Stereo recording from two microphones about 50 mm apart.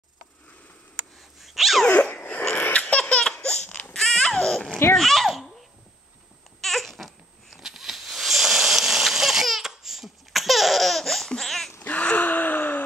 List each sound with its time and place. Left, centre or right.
1.4 s sneeze: centre
1.9 s sneeze: left
2.5 s laughter: left; by 3.6 s centre
3.6 s baby cry: left
3.9 s baby cry: centre
4.9 s babbling: centre
6.6 s babbling: centre
7.5 s a sound: centre
11.8 s gasp: left